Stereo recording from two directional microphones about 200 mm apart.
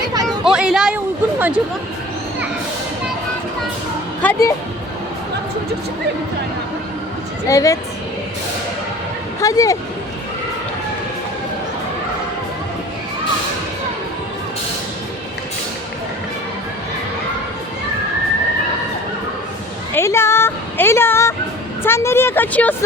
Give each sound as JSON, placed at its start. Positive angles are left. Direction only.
{"t": 0.3, "sound": "chatter", "side_deg": -5}
{"t": 4.2, "sound": "speech", "side_deg": 10}
{"t": 7.4, "sound": "speech", "side_deg": 15}
{"t": 9.4, "sound": "speech", "side_deg": 15}
{"t": 19.9, "sound": "a sound", "side_deg": 15}
{"t": 21.8, "sound": "speech", "side_deg": 10}